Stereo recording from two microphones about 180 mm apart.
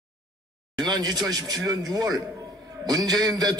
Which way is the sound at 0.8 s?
25° right (ahead or behind).